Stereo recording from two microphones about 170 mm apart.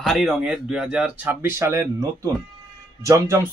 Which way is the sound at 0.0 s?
Centre (ahead or behind).